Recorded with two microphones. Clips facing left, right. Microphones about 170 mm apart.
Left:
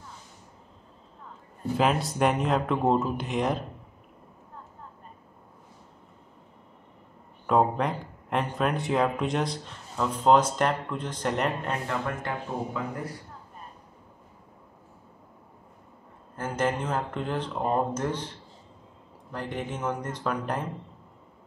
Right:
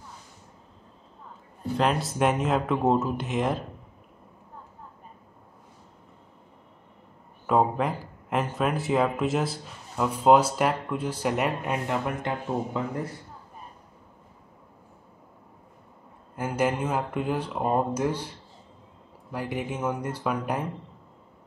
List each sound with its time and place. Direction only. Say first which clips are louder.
1.8 s speech: even; centre (ahead or behind)
7.4 s speech: even; 5° right (ahead or behind); by 12.8 s 20° right (ahead or behind)
16.3 s speech: right 2 dB; 10° right (ahead or behind)
19.3 s speech: right 2 dB; 10° right (ahead or behind)